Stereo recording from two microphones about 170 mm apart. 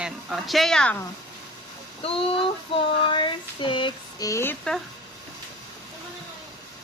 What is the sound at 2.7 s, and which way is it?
Child singing, 30° left (ahead or behind).